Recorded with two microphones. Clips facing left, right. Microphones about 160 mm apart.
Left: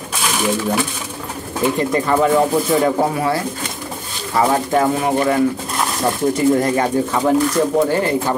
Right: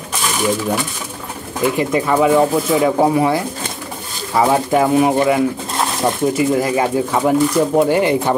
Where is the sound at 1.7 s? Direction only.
5° right (ahead or behind).